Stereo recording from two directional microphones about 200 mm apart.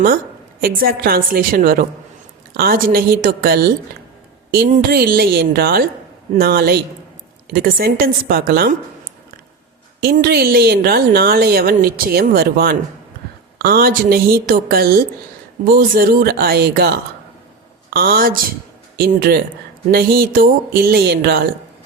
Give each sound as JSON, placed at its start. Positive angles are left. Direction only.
{"t": 0.6, "sound": "a woman's voice", "side_deg": -50}
{"t": 10.0, "sound": "a woman's voice", "side_deg": -50}